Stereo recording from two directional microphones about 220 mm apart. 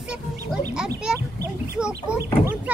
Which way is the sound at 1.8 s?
5° right (ahead or behind).